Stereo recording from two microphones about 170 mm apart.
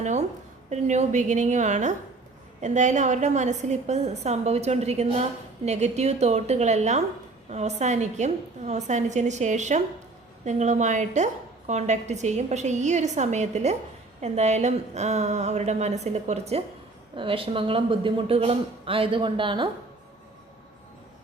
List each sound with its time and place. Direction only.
0.0 s a woman's voice: 45° right (ahead or behind)